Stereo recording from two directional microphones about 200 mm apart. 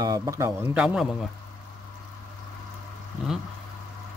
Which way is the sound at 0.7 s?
5° right (ahead or behind).